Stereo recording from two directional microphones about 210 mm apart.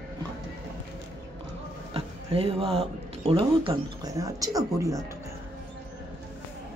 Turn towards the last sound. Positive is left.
turn(degrees=-15)  # may be behind; listen again after turning